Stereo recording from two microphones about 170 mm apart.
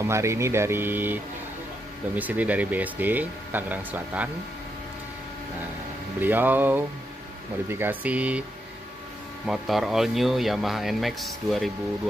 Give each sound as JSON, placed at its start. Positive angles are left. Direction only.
{"t": 0.0, "sound": "speech", "side_deg": -15}
{"t": 6.2, "sound": "speech", "side_deg": -10}
{"t": 7.8, "sound": "speech", "side_deg": -10}
{"t": 9.5, "sound": "speech", "side_deg": 0}